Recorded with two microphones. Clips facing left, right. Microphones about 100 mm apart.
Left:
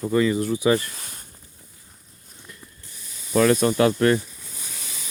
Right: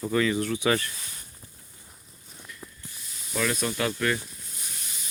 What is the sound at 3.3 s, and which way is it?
Speech, 40° left (ahead or behind).